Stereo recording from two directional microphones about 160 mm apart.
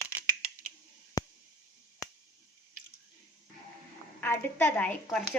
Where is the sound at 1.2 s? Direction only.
20° left (ahead or behind).